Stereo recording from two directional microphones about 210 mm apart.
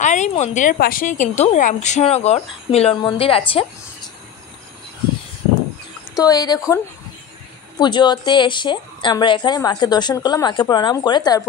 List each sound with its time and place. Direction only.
0.0 s a sound: 35° left (ahead or behind)
0.3 s speech: 35° left (ahead or behind)
6.1 s a woman's voice: 15° left (ahead or behind)
7.8 s a woman's voice: 20° left (ahead or behind)